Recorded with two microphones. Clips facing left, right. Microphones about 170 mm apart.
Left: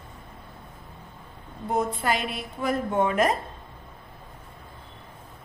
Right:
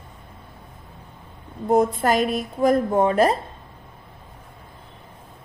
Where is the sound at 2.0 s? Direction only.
45° right (ahead or behind).